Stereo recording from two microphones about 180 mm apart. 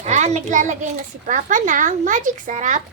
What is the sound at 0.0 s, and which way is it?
A child's voice, 40° right (ahead or behind).